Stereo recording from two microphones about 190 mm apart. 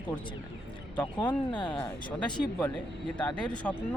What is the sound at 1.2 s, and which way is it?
Speech, 10° left (ahead or behind).